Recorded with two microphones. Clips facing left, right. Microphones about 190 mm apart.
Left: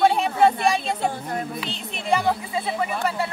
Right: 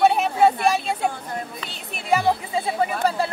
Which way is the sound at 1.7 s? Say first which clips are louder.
Right 2 dB; 10° right (ahead or behind).